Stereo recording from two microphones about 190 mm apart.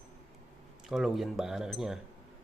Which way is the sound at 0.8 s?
Centre (ahead or behind).